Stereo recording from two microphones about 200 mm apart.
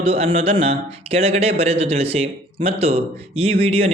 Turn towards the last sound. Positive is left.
turn(degrees=-30)  # may be behind; listen again after turning